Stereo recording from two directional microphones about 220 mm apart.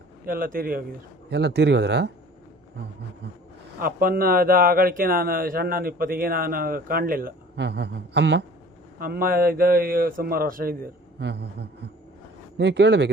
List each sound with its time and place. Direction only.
0.3 s speech: 40° right (ahead or behind)
3.8 s speech: 40° right (ahead or behind)
9.0 s speech: 40° right (ahead or behind)
12.5 s speech: 55° right (ahead or behind)